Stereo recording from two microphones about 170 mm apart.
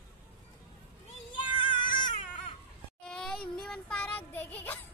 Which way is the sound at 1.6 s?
30° left (ahead or behind).